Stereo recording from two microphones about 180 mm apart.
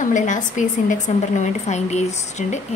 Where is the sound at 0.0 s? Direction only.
45° left (ahead or behind).